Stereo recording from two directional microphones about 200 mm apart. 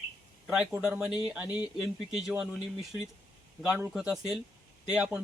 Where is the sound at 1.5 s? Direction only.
20° left (ahead or behind).